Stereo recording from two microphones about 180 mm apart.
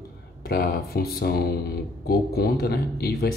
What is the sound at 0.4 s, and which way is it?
Speech, 55° left (ahead or behind).